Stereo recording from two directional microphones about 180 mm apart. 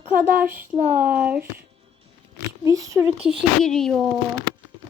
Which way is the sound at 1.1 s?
5° right (ahead or behind).